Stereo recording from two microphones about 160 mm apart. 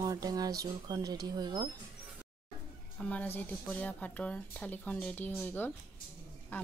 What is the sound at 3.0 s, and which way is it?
A woman's voice, 10° left (ahead or behind).